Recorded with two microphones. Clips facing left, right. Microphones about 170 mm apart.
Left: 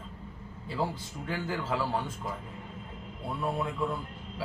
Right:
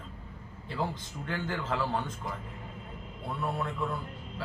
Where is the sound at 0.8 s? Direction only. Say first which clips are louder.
Left 1 dB; 5° left (ahead or behind).